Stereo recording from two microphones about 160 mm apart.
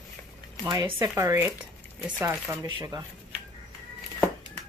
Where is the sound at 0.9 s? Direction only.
15° right (ahead or behind).